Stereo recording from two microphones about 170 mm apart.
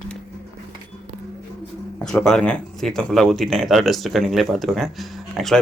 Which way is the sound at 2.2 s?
5° left (ahead or behind).